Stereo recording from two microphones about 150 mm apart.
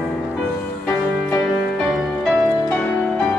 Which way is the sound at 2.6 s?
10° left (ahead or behind).